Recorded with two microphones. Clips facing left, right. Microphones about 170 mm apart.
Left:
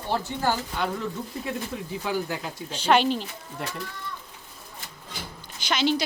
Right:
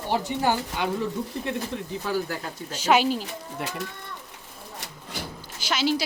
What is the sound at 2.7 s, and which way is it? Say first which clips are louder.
Speech: even; 10° right (ahead or behind).